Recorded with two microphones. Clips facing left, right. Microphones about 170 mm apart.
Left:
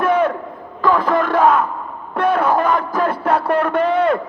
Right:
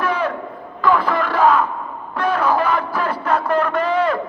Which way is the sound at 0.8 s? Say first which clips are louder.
Left 2 dB; 40° left (ahead or behind).